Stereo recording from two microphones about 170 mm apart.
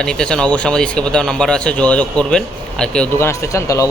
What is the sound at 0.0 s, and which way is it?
Speech, 5° left (ahead or behind).